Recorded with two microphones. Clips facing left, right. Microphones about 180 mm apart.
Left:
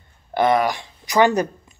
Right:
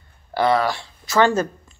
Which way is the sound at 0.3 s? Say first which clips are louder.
Left 1 dB; 20° left (ahead or behind).